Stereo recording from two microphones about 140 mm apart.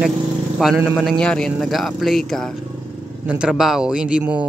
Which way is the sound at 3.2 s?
10° right (ahead or behind).